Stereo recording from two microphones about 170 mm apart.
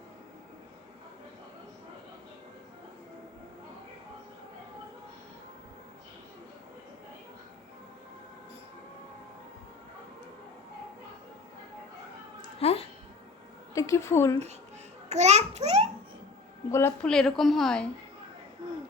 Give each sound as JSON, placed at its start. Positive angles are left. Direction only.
{"t": 12.5, "sound": "a sound", "side_deg": 35}
{"t": 13.7, "sound": "a woman's voice", "side_deg": 20}
{"t": 15.1, "sound": "a child's voice", "side_deg": -40}
{"t": 16.7, "sound": "a woman's voice", "side_deg": 15}
{"t": 17.1, "sound": "a woman's voice", "side_deg": 0}